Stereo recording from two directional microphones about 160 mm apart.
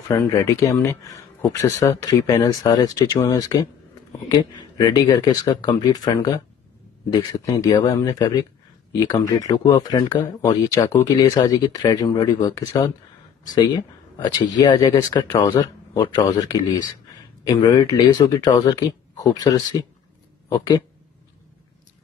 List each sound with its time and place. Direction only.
0.1 s speech: 20° left (ahead or behind)